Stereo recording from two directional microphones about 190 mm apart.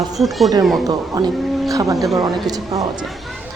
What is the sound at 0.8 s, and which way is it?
Speech, 20° right (ahead or behind).